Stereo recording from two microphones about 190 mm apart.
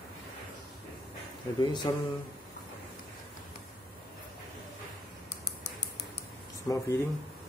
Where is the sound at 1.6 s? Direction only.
25° left (ahead or behind).